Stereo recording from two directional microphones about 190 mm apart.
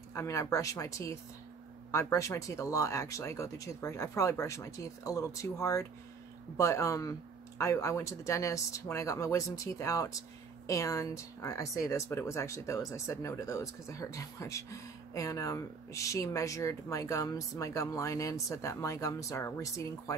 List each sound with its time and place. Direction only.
0.1 s speech: 15° left (ahead or behind)